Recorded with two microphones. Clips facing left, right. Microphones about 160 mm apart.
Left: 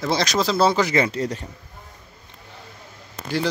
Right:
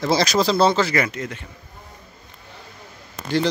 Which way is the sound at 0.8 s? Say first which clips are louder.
Left 2 dB; 25° left (ahead or behind).